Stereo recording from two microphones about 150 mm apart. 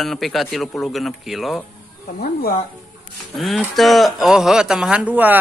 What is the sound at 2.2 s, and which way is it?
Speech, 85° left.